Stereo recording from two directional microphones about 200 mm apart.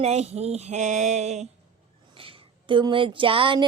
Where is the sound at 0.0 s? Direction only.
30° right (ahead or behind).